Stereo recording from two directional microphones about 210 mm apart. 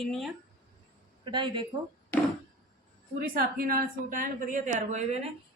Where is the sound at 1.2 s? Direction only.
20° right (ahead or behind).